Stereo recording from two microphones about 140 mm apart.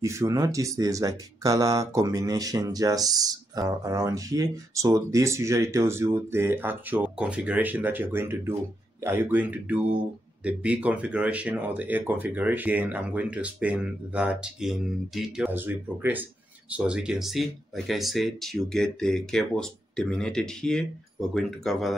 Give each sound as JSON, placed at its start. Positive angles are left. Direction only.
{"t": 0.0, "sound": "speech", "side_deg": -20}
{"t": 15.5, "sound": "speech", "side_deg": -15}